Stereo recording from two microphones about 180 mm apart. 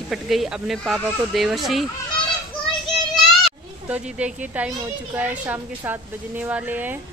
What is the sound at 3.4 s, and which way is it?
Speech, 5° right (ahead or behind).